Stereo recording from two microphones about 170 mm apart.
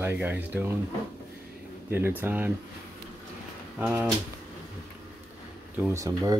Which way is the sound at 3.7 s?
10° right (ahead or behind).